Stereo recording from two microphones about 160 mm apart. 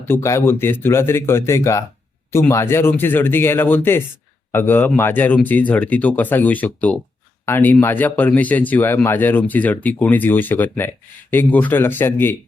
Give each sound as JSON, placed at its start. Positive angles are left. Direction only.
{"t": 0.0, "sound": "speech", "side_deg": 15}